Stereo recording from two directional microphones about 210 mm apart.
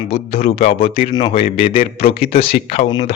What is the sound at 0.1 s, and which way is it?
Speech, 30° left (ahead or behind).